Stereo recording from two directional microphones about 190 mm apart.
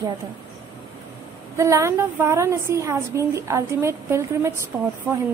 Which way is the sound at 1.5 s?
15° right (ahead or behind).